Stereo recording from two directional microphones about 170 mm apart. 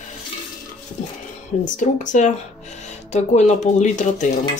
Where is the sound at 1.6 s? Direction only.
50° left (ahead or behind).